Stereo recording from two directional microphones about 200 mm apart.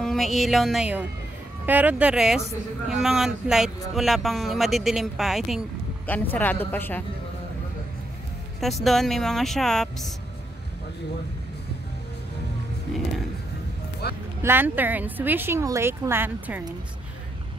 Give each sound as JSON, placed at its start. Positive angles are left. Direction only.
{"t": 0.0, "sound": "a woman's voice", "side_deg": 0}
{"t": 8.5, "sound": "speech", "side_deg": 0}
{"t": 12.9, "sound": "speech", "side_deg": 5}
{"t": 14.0, "sound": "speech", "side_deg": 55}
{"t": 14.4, "sound": "speech", "side_deg": -10}